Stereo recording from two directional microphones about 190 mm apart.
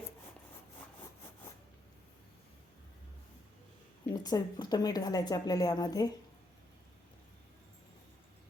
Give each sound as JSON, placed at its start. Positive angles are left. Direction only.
{"t": 4.1, "sound": "a woman's voice", "side_deg": 20}